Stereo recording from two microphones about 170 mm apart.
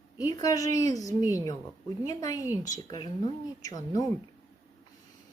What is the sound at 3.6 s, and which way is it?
Speech, 20° left (ahead or behind).